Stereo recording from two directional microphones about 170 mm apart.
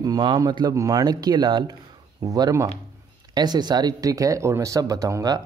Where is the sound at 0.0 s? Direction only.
25° right (ahead or behind).